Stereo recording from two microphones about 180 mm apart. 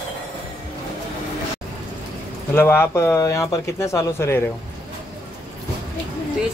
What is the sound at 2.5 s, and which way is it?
Speech, 10° left (ahead or behind).